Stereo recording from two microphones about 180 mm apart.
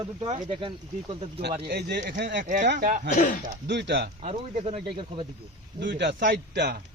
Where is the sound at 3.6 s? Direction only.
70° right (ahead or behind).